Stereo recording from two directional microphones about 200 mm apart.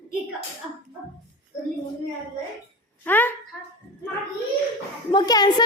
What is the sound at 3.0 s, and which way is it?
Speech, 10° left (ahead or behind).